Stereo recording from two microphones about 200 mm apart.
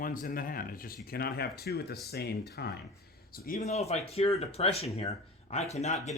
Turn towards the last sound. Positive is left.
turn(degrees=35)  # may be behind; listen again after turning